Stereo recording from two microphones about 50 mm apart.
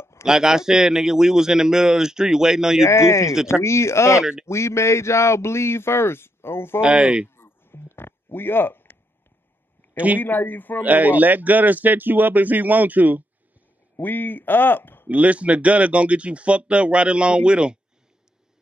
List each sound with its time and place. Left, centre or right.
0.2 s a man's voice: centre
2.9 s speech: left
4.2 s a man's voice: centre
4.5 s speech: left
6.8 s speech: right
7.2 s a sound: left
9.9 s speech: right
10.2 s speech: left
10.8 s speech: right
13.9 s speech: left
15.0 s speech: right